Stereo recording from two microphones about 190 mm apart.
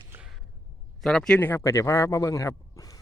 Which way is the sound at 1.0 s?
5° left (ahead or behind).